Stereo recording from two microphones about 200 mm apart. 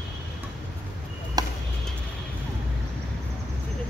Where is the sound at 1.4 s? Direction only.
20° right (ahead or behind).